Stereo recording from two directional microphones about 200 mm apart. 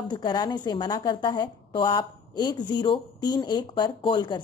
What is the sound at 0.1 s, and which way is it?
A woman's voice, 20° left (ahead or behind).